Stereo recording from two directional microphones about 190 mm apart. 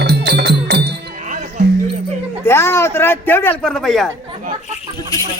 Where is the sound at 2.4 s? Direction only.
15° left (ahead or behind).